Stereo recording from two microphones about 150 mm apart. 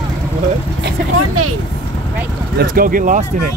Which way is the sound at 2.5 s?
70° right (ahead or behind).